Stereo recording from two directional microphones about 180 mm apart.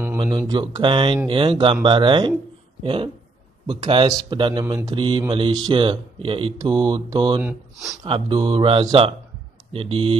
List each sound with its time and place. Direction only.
0.2 s speech: 25° right (ahead or behind)